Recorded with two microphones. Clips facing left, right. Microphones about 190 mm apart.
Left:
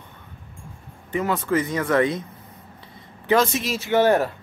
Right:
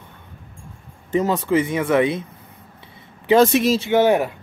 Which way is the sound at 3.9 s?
10° right (ahead or behind).